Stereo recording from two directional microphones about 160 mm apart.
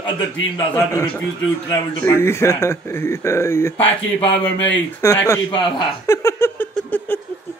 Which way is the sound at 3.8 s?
35° left (ahead or behind).